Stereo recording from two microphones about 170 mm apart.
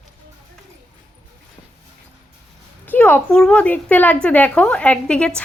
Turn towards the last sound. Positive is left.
turn(degrees=5)  # may be behind; listen again after turning